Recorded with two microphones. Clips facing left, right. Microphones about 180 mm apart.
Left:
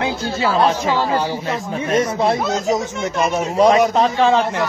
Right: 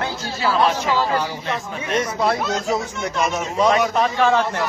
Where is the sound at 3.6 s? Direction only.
35° left (ahead or behind).